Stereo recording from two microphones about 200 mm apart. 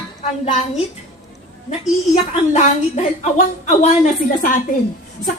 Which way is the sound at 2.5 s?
35° left (ahead or behind).